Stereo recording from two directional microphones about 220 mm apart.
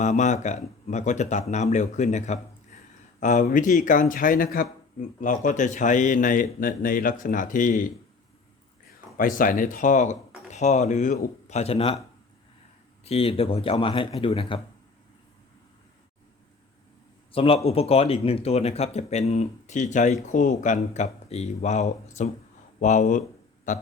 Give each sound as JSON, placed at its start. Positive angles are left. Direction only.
{"t": 0.0, "sound": "speech", "side_deg": 35}
{"t": 2.7, "sound": "a sound", "side_deg": 35}
{"t": 3.2, "sound": "speech", "side_deg": 35}
{"t": 9.1, "sound": "speech", "side_deg": 40}
{"t": 13.1, "sound": "speech", "side_deg": 25}
{"t": 17.3, "sound": "speech", "side_deg": 25}